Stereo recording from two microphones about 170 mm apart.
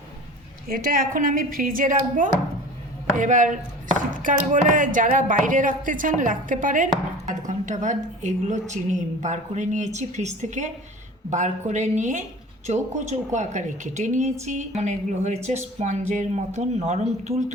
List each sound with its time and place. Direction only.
0.7 s speech: 55° right (ahead or behind); by 17.4 s 40° right (ahead or behind)